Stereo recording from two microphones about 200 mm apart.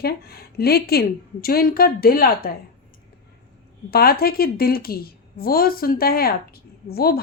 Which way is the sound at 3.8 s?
50° left (ahead or behind).